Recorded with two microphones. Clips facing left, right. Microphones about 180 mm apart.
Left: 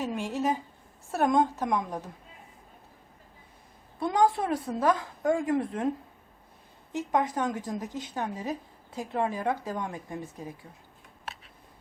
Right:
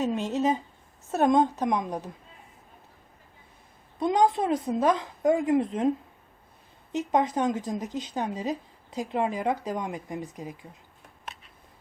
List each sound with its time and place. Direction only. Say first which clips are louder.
0.0 s speech: right 4 dB; 20° right (ahead or behind)
3.9 s speech: right 2 dB; 20° right (ahead or behind)
6.9 s speech: right 3 dB; 20° right (ahead or behind)